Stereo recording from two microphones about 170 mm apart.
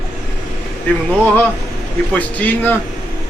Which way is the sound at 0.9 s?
10° left (ahead or behind).